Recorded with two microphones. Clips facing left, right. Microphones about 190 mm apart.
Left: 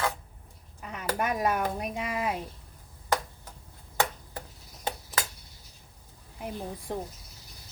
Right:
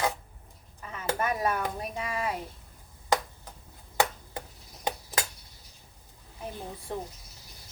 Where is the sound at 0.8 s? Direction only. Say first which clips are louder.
Left 1 dB; 15° left (ahead or behind).